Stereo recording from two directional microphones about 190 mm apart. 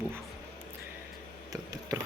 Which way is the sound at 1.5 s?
20° right (ahead or behind).